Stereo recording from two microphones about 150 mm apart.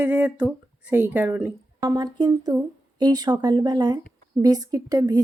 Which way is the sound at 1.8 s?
25° right (ahead or behind).